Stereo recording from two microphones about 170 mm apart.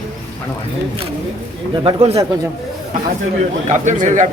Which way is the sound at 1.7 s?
30° right (ahead or behind).